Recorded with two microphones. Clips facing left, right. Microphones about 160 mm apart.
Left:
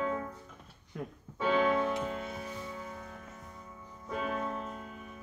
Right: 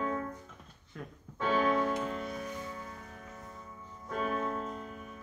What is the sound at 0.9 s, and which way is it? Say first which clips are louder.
Music: left 4 dB; 15° left (ahead or behind).